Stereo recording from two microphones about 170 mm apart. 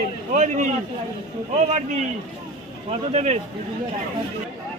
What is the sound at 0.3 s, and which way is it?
Speech, 45° right (ahead or behind).